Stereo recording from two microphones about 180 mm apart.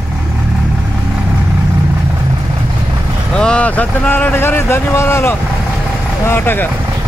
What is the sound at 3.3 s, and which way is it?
Speech, 5° left (ahead or behind).